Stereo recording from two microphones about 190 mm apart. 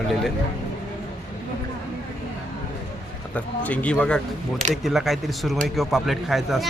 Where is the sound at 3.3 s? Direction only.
10° left (ahead or behind).